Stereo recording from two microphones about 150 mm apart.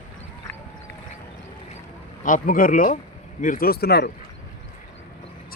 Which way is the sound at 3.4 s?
75° left (ahead or behind).